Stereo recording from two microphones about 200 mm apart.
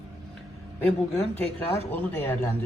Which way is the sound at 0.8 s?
10° left (ahead or behind).